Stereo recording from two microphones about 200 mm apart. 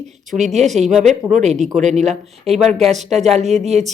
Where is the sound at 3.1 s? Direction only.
35° right (ahead or behind).